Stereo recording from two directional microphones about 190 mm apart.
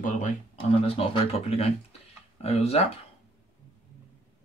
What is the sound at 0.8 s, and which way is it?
Speech, 30° left (ahead or behind).